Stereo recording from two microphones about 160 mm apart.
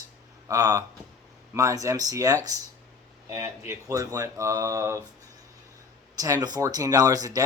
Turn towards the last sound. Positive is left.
turn(degrees=-25)  # may be behind; listen again after turning